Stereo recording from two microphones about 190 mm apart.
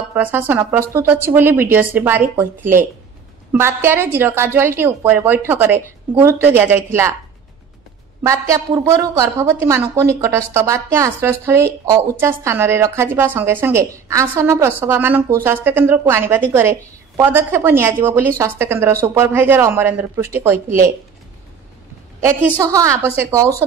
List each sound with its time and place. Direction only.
0.1 s a woman's voice: 10° right (ahead or behind)
8.2 s a woman's voice: 15° right (ahead or behind)
22.6 s a woman's voice: 15° right (ahead or behind)